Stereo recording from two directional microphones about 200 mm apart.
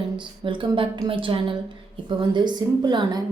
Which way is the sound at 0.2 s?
25° right (ahead or behind).